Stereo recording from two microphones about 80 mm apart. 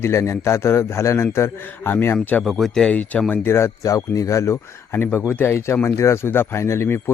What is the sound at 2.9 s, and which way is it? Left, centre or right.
Speech, centre.